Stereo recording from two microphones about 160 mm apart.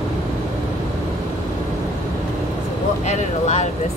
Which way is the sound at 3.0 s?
45° left (ahead or behind).